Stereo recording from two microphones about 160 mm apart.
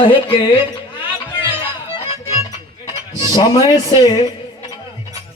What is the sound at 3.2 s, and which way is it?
A man's voice, 25° left (ahead or behind).